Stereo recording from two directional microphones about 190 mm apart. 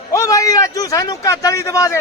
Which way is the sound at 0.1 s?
15° left (ahead or behind).